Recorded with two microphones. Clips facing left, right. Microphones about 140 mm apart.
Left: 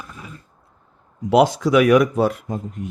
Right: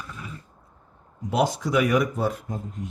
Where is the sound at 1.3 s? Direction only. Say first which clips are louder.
Left 8 dB; 85° left.